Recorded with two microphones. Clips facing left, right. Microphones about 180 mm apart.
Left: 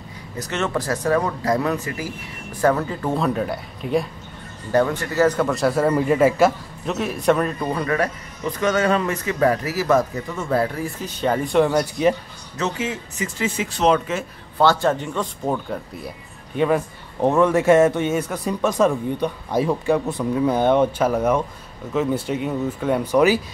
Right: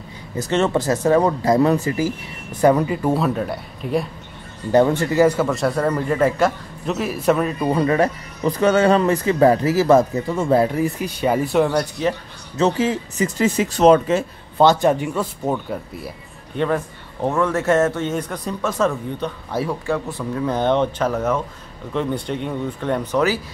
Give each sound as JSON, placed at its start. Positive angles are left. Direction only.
{"t": 0.4, "sound": "speech", "side_deg": -30}
{"t": 2.6, "sound": "a man's voice", "side_deg": -15}
{"t": 4.7, "sound": "speech", "side_deg": -25}
{"t": 5.1, "sound": "a man's voice", "side_deg": -10}
{"t": 7.7, "sound": "speech", "side_deg": -25}
{"t": 10.6, "sound": "speech", "side_deg": -15}
{"t": 12.5, "sound": "speech", "side_deg": -35}
{"t": 14.6, "sound": "speech", "side_deg": -20}
{"t": 16.5, "sound": "a man's voice", "side_deg": 10}